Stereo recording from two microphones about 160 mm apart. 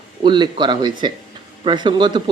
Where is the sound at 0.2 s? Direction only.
30° right (ahead or behind).